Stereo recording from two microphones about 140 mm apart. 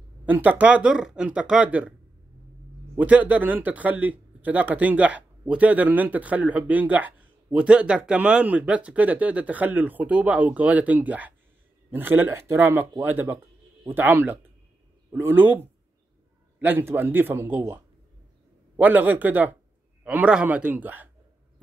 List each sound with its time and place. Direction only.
0.2 s speech: 10° right (ahead or behind)
3.0 s speech: 10° right (ahead or behind)
18.8 s speech: 10° right (ahead or behind)